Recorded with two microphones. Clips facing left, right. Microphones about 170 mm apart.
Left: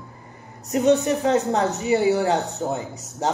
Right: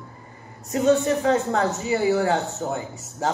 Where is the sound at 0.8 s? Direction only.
20° left (ahead or behind).